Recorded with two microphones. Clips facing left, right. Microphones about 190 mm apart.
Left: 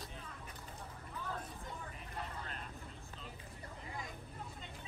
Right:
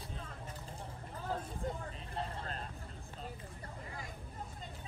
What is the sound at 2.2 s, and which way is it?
Vehicle, 30° right (ahead or behind).